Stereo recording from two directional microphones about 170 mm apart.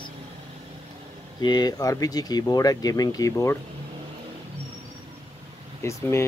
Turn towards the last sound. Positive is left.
turn(degrees=15)  # may be behind; listen again after turning